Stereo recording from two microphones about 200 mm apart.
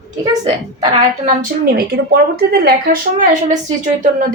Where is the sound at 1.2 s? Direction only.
45° right (ahead or behind).